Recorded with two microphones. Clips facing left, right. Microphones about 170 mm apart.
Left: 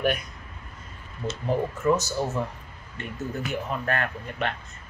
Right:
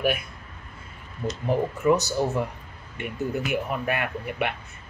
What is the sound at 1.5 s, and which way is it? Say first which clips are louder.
Speech: right 2 dB; 15° right (ahead or behind).